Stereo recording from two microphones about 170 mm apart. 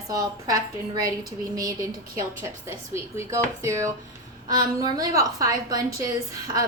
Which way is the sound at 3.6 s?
15° right (ahead or behind).